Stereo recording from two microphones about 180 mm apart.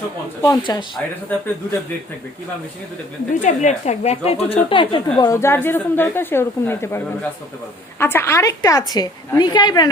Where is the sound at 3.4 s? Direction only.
40° left (ahead or behind); by 9.8 s 25° left (ahead or behind).